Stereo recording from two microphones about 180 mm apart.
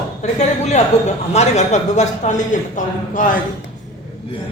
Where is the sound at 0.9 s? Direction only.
40° left (ahead or behind).